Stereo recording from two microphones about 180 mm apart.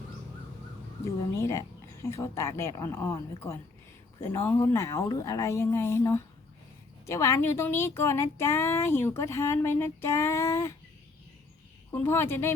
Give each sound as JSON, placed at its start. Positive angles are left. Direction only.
{"t": 1.0, "sound": "a woman's voice", "side_deg": 15}
{"t": 11.9, "sound": "a woman's voice", "side_deg": 15}